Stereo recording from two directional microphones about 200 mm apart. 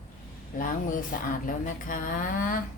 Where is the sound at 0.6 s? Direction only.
45° left (ahead or behind).